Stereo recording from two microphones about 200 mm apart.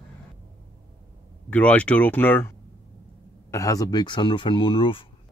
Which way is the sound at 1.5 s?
5° left (ahead or behind).